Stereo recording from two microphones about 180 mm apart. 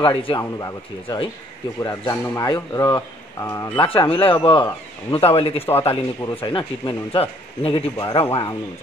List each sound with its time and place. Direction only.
0.0 s speech: 30° left (ahead or behind)
0.4 s speech: 15° left (ahead or behind)
3.8 s a man's voice: 30° left (ahead or behind)